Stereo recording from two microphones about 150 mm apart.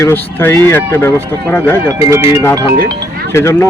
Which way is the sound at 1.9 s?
20° right (ahead or behind).